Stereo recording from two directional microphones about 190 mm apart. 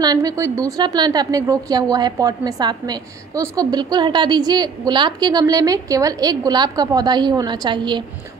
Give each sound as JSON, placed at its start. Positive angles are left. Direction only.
{"t": 0.0, "sound": "a woman's voice", "side_deg": -20}